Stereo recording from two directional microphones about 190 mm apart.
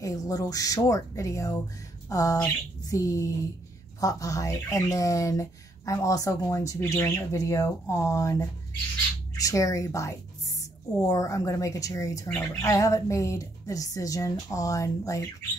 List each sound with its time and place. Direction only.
0.0 s speech: 20° left (ahead or behind)